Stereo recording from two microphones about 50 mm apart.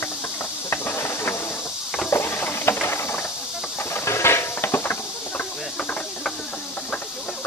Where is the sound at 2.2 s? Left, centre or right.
Left.